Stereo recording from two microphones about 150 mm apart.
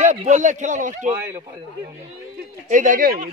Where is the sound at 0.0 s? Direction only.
55° right (ahead or behind).